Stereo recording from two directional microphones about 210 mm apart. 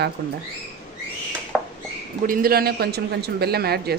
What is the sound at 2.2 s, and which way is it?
Speech, 45° right (ahead or behind).